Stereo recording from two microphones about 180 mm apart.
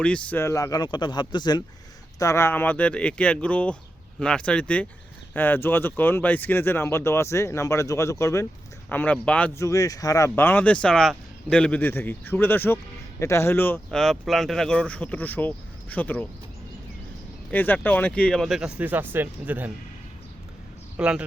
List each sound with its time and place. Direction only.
0.0 s speech: 5° left (ahead or behind)
9.6 s speech: 15° left (ahead or behind)
17.5 s speech: 10° left (ahead or behind); by 19.7 s 10° right (ahead or behind)
20.9 s a man's voice: 5° right (ahead or behind)